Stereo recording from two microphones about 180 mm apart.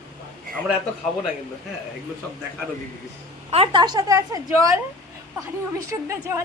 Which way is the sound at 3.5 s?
30° right (ahead or behind).